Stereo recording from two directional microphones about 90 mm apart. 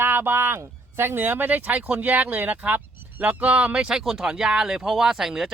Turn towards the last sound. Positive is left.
turn(degrees=-5)  # may be behind; listen again after turning